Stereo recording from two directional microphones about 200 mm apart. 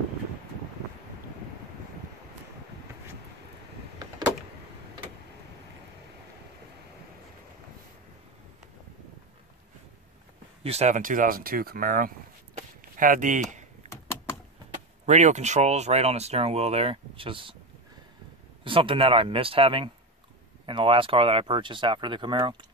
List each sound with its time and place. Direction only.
10.6 s speech: 30° right (ahead or behind)
12.5 s chop: 40° right (ahead or behind)
15.0 s speech: 35° right (ahead or behind)
18.6 s speech: 25° right (ahead or behind)